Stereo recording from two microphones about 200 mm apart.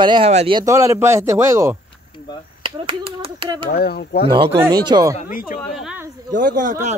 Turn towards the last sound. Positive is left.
turn(degrees=-40)  # may be behind; listen again after turning